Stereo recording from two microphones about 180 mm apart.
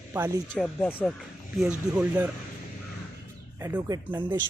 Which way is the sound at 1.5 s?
5° right (ahead or behind).